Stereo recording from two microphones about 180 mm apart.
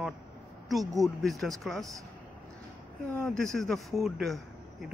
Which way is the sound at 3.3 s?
5° left (ahead or behind).